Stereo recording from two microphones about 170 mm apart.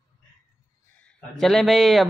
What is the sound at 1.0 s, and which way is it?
A man's voice, 5° left (ahead or behind).